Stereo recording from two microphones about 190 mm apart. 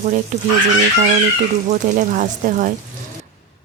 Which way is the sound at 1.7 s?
45° right (ahead or behind).